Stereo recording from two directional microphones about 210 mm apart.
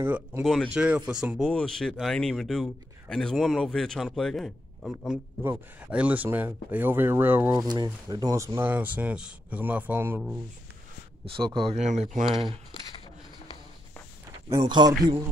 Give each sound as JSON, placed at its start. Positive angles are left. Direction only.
{"t": 0.0, "sound": "speech", "side_deg": -10}
{"t": 11.2, "sound": "speech", "side_deg": -25}
{"t": 14.6, "sound": "speech", "side_deg": -20}